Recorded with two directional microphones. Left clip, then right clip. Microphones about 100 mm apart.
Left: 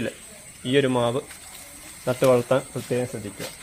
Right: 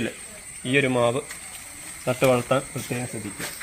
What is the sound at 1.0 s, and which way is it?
Speech, 25° left (ahead or behind).